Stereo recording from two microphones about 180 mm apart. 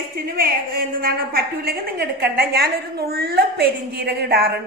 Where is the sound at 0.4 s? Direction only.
55° right (ahead or behind).